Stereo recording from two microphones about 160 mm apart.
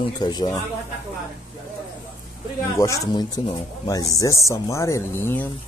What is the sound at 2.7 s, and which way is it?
Speech, 20° left (ahead or behind).